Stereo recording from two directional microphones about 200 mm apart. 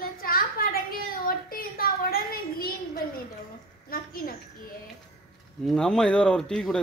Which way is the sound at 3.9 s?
45° left (ahead or behind).